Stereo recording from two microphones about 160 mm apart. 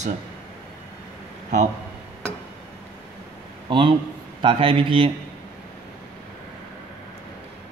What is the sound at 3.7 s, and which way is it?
A man's voice, 30° right (ahead or behind).